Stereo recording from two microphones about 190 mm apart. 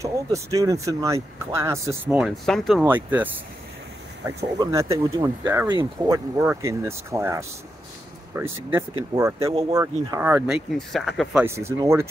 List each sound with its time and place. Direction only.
0.0 s speech: 15° right (ahead or behind); by 2.8 s centre (ahead or behind)
2.8 s speech: 10° right (ahead or behind)
4.4 s speech: 15° right (ahead or behind); by 11.4 s centre (ahead or behind)
11.4 s speech: 15° right (ahead or behind)